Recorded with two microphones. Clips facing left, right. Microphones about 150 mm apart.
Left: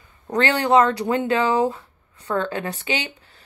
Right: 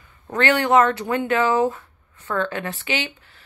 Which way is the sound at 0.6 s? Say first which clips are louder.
Left 1 dB; 25° left (ahead or behind).